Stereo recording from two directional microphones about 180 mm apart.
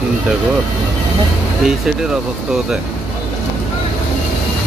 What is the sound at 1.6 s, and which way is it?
Speech, 5° right (ahead or behind).